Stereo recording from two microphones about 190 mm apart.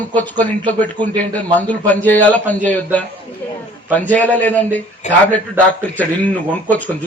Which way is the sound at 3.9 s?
10° left (ahead or behind).